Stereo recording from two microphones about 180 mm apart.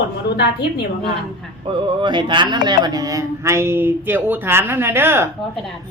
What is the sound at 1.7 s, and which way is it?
Speech, 25° right (ahead or behind).